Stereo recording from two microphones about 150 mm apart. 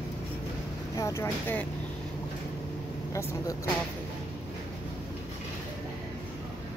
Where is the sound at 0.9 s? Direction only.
20° left (ahead or behind).